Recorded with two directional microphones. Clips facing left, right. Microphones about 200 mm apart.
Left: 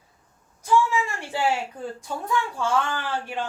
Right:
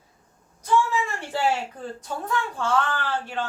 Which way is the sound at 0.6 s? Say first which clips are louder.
Left 1 dB; 10° left (ahead or behind).